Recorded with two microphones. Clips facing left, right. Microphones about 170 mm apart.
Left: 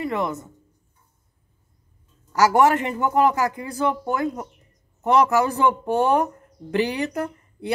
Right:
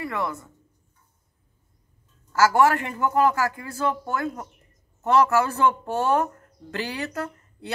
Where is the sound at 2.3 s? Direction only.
20° left (ahead or behind).